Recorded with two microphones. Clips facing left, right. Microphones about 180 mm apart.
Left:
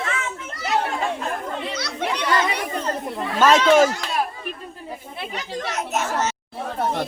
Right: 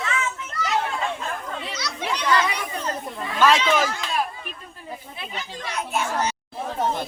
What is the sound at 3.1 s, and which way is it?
Children playing, 45° left (ahead or behind).